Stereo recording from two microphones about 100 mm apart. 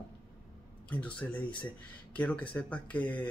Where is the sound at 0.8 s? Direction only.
15° left (ahead or behind).